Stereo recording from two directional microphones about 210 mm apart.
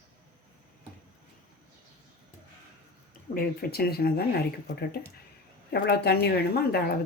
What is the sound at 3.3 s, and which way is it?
Speech, 45° left (ahead or behind).